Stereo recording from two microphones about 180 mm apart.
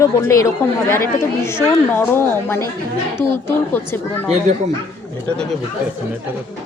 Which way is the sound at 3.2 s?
10° left (ahead or behind).